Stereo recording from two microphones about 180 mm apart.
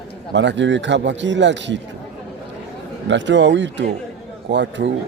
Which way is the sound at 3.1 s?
85° right.